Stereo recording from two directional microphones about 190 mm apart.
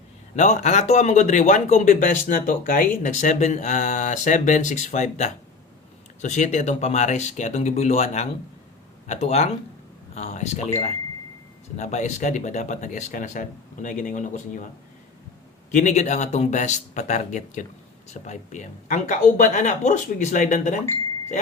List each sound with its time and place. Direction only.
0.3 s speech: 40° left (ahead or behind)
15.7 s speech: 40° left (ahead or behind)